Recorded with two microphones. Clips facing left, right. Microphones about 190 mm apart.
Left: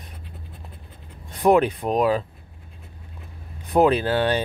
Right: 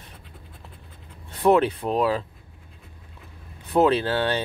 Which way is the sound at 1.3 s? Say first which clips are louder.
Left 1 dB; 15° left (ahead or behind).